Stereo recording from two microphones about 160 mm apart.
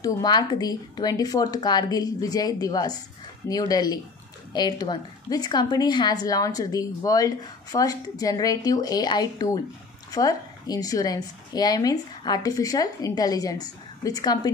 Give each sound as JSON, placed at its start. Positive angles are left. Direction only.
{"t": 0.0, "sound": "a woman's voice", "side_deg": 25}